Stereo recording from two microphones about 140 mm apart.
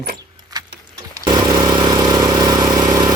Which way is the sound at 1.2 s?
30° right (ahead or behind).